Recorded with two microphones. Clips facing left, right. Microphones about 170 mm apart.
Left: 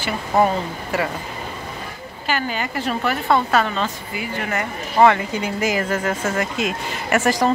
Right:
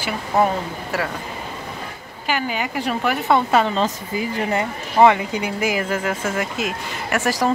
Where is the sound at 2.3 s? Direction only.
10° right (ahead or behind).